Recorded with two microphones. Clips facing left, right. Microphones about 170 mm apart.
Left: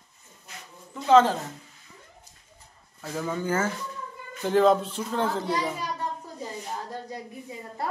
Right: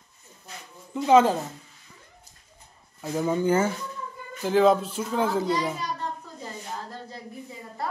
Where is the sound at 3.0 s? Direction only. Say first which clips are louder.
Right 5 dB; 20° right (ahead or behind).